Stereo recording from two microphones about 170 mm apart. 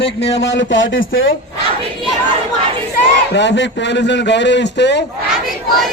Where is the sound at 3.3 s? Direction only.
90° left.